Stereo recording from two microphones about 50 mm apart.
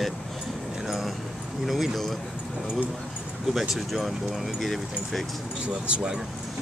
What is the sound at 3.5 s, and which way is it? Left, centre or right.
Speech, centre.